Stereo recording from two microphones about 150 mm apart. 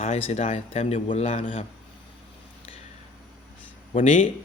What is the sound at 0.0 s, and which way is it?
Speech, 45° left (ahead or behind).